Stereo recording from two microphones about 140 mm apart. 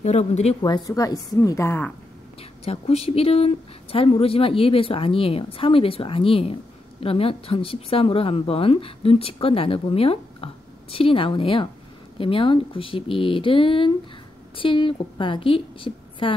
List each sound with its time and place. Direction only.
0.0 s speech: 50° left (ahead or behind)
0.6 s a woman's voice: 30° left (ahead or behind); by 2.0 s 15° left (ahead or behind)
2.6 s speech: 45° left (ahead or behind)